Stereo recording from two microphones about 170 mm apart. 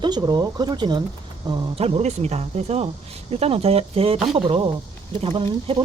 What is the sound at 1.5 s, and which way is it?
Speech, 35° right (ahead or behind).